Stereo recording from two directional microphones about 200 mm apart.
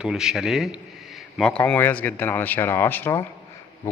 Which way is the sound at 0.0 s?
Centre (ahead or behind).